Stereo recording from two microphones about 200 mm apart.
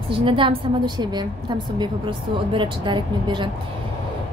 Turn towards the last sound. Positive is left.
turn(degrees=-25)  # may be behind; listen again after turning